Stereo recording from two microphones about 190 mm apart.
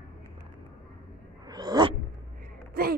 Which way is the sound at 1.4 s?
20° right (ahead or behind).